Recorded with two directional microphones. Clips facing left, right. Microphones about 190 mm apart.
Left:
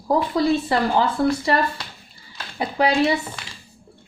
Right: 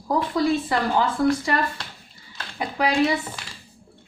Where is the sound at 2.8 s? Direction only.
30° left (ahead or behind).